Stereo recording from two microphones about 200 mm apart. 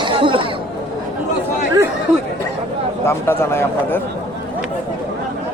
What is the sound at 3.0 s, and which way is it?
Speech, 10° left (ahead or behind).